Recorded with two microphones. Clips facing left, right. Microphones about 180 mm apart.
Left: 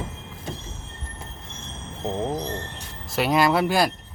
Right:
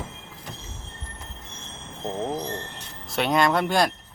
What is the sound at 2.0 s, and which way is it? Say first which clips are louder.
Speech: left 2 dB; centre (ahead or behind).